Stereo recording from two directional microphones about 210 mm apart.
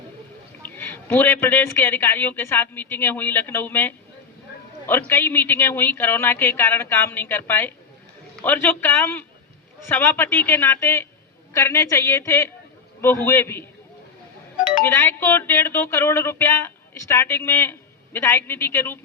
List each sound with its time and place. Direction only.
0.6 s speech: 10° left (ahead or behind)
14.8 s speech: 10° left (ahead or behind)